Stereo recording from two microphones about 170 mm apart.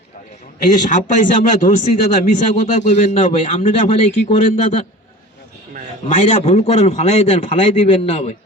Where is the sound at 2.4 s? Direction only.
45° left (ahead or behind).